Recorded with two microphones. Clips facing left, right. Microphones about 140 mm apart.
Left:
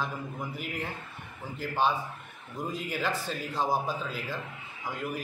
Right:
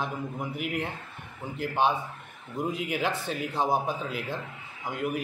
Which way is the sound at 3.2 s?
55° right (ahead or behind).